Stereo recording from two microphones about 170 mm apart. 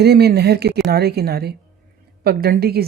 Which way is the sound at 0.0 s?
70° right (ahead or behind).